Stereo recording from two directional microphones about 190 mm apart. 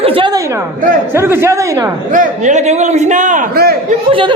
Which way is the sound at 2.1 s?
40° right (ahead or behind).